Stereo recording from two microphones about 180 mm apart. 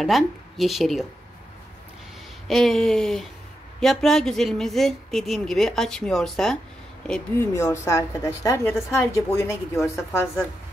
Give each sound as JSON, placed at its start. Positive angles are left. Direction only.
{"t": 0.0, "sound": "a woman's voice", "side_deg": 0}
{"t": 2.4, "sound": "a woman's voice", "side_deg": 0}
{"t": 7.1, "sound": "a woman's voice", "side_deg": 15}